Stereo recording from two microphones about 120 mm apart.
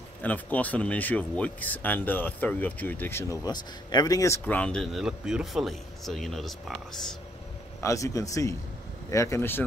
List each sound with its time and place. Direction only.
0.2 s speech: 15° left (ahead or behind)
3.4 s speech: 30° left (ahead or behind)
4.5 s speech: 10° left (ahead or behind)
5.0 s speech: 5° right (ahead or behind)
7.8 s speech: 25° left (ahead or behind)